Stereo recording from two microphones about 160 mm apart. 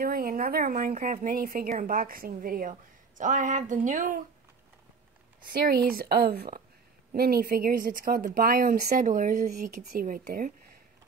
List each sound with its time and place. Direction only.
0.0 s speech: 65° right (ahead or behind)
5.4 s speech: 65° right (ahead or behind)